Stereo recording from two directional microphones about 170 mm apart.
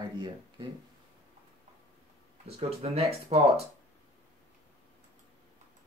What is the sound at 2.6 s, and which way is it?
Speech, 40° right (ahead or behind).